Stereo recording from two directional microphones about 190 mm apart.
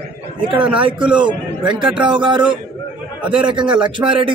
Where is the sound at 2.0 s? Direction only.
25° right (ahead or behind).